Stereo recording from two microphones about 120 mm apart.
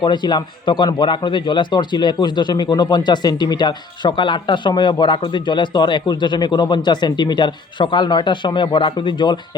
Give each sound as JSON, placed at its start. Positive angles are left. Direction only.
{"t": 0.0, "sound": "speech", "side_deg": 40}